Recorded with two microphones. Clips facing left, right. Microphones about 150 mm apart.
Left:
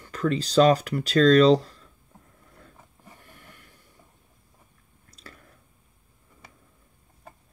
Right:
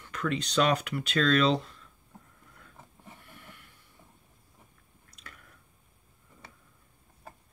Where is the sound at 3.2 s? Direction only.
40° left (ahead or behind).